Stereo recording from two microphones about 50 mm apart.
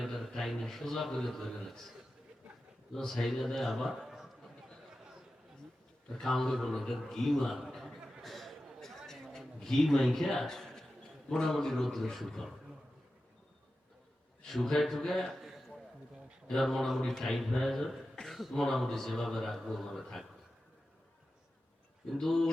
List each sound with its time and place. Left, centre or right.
0.0 s a sound: centre
2.9 s a man's voice: centre
6.1 s a man's voice: centre
7.7 s a sound: centre
11.3 s a man's voice: centre
14.4 s a man's voice: centre
16.5 s a man's voice: centre
22.1 s a man's voice: centre